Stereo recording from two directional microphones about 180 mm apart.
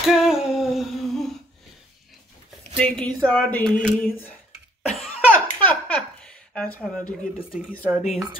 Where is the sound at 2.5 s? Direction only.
5° left (ahead or behind).